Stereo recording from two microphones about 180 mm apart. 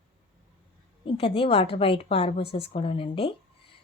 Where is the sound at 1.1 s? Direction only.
30° left (ahead or behind).